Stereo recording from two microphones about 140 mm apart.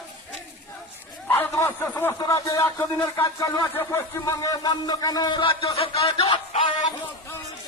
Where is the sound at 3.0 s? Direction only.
25° left (ahead or behind); by 6.4 s 45° left (ahead or behind).